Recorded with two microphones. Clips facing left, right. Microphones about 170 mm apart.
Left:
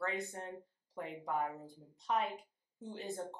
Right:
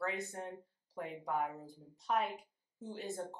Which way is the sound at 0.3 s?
5° right (ahead or behind).